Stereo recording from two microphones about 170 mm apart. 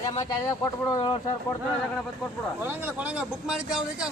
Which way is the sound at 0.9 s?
25° left (ahead or behind).